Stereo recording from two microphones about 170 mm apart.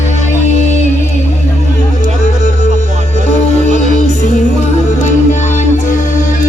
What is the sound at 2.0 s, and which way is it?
Music, 40° left (ahead or behind).